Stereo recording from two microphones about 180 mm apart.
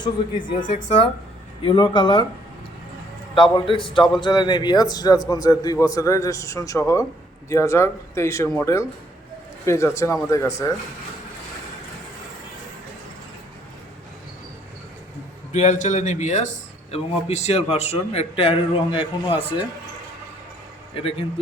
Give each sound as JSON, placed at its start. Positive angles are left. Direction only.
{"t": 0.4, "sound": "a man's voice", "side_deg": 30}
{"t": 3.3, "sound": "a man's voice", "side_deg": 25}
{"t": 15.5, "sound": "a man's voice", "side_deg": 40}
{"t": 20.9, "sound": "a man's voice", "side_deg": 30}